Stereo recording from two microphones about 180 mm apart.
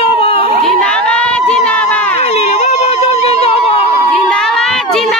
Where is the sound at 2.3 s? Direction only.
35° left (ahead or behind).